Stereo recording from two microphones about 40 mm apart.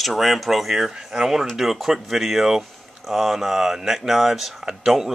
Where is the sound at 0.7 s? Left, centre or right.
Centre.